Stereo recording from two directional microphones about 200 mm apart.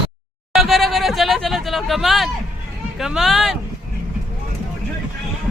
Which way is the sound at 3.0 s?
Centre (ahead or behind).